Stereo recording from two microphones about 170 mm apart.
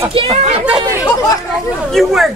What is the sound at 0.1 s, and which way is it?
Speech, 35° right (ahead or behind).